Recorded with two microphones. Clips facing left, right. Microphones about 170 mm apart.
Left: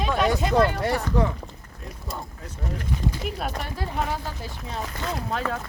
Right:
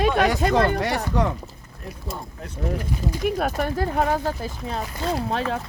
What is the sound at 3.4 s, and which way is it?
Speech, 50° right (ahead or behind).